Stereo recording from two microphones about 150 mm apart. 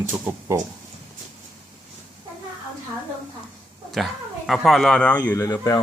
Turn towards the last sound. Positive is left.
turn(degrees=20)  # may be behind; listen again after turning